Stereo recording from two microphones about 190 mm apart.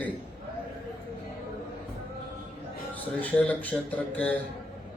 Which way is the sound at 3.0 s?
10° left (ahead or behind).